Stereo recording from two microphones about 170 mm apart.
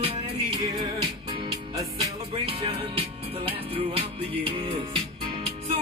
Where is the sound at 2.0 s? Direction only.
30° right (ahead or behind).